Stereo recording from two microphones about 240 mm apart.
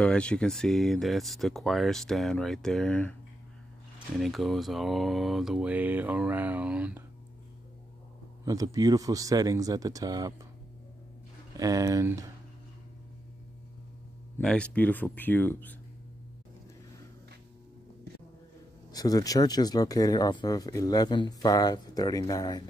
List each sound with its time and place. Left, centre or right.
0.0 s speech: centre
4.2 s speech: centre
8.5 s speech: centre
11.5 s speech: centre
14.4 s speech: centre
18.9 s speech: centre